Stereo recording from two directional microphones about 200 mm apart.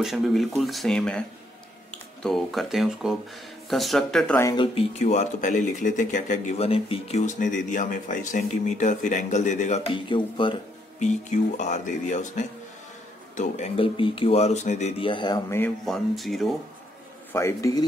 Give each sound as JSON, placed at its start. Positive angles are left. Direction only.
{"t": 0.0, "sound": "speech", "side_deg": 0}
{"t": 2.2, "sound": "speech", "side_deg": 0}
{"t": 4.4, "sound": "speech", "side_deg": 15}
{"t": 4.7, "sound": "speech", "side_deg": 35}
{"t": 11.0, "sound": "speech", "side_deg": 35}
{"t": 15.6, "sound": "speech", "side_deg": 0}
{"t": 17.3, "sound": "speech", "side_deg": 15}